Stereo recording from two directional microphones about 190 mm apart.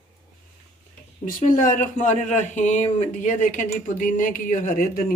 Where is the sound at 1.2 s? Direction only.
45° left (ahead or behind).